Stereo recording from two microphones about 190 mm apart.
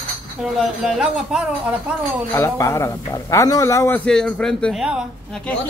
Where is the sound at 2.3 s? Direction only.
15° left (ahead or behind).